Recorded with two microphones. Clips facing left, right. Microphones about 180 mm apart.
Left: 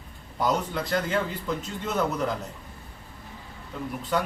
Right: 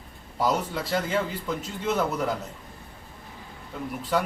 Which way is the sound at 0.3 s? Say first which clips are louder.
Even; 5° right (ahead or behind).